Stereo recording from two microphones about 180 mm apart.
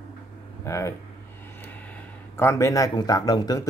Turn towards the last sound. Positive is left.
turn(degrees=20)  # may be behind; listen again after turning